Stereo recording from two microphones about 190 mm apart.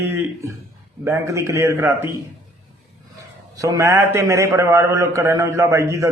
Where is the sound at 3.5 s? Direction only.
15° right (ahead or behind).